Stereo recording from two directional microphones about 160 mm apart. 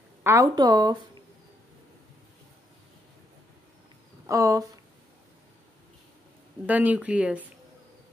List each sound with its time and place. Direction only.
0.2 s a woman's voice: 20° right (ahead or behind)
4.3 s speech: 20° right (ahead or behind)
6.6 s speech: 10° right (ahead or behind)